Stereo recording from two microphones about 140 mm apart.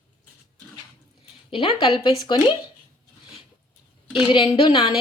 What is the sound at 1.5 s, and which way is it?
Speech, 40° left (ahead or behind).